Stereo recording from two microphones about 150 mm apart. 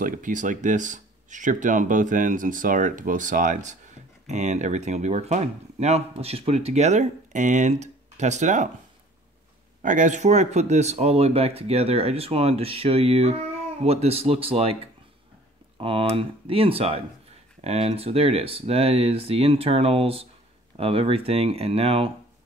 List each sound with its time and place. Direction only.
0.0 s speech: 65° right (ahead or behind)
9.8 s speech: 60° right (ahead or behind); by 14.8 s 40° right (ahead or behind)
15.8 s speech: 35° right (ahead or behind)